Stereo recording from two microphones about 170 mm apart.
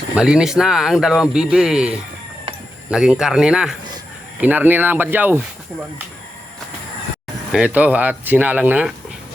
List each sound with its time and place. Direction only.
0.2 s speech: 5° right (ahead or behind)
7.5 s speech: 5° right (ahead or behind)